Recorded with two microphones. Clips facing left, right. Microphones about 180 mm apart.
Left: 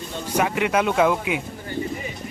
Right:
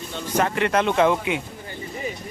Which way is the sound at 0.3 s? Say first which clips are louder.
Even; 5° left (ahead or behind).